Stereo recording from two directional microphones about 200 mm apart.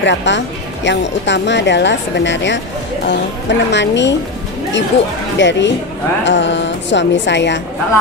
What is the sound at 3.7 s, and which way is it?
Speech, 60° left (ahead or behind).